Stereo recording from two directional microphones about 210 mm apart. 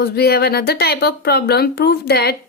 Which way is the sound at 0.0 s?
50° left (ahead or behind).